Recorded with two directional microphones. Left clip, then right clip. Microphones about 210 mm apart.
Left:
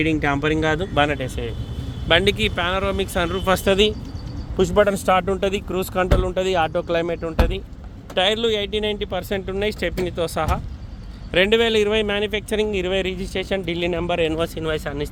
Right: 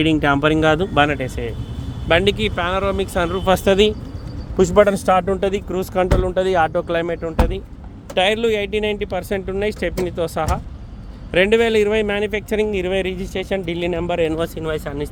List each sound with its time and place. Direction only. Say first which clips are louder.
0.2 s speech: right 5 dB; 25° right (ahead or behind); by 3.4 s centre (ahead or behind)
3.4 s speech: right 3 dB; 15° right (ahead or behind); by 15.1 s 5° left (ahead or behind)